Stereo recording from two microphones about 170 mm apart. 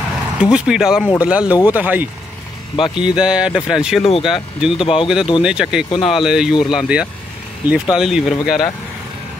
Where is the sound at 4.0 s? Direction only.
35° left (ahead or behind).